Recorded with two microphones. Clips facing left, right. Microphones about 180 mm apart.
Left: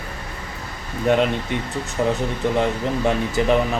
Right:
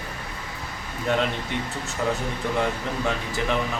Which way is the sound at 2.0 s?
25° left (ahead or behind).